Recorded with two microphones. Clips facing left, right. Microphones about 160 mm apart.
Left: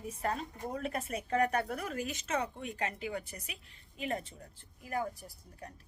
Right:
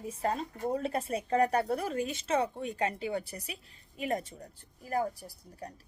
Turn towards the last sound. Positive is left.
turn(degrees=-35)  # may be behind; listen again after turning